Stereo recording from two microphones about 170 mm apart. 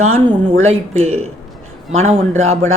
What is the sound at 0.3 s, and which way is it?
Speech, 35° right (ahead or behind).